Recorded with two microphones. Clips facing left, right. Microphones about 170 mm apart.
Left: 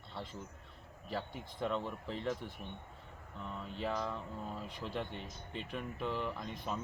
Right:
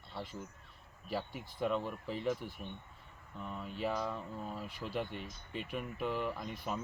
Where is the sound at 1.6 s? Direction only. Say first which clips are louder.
Right 2 dB; 5° right (ahead or behind).